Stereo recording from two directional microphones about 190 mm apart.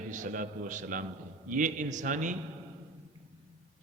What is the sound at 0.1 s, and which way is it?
A man's voice, 45° right (ahead or behind).